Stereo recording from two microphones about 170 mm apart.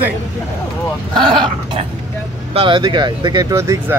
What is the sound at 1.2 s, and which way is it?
Speech, 30° right (ahead or behind).